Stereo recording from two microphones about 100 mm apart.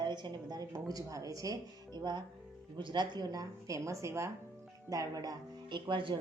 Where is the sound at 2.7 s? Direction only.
50° right (ahead or behind).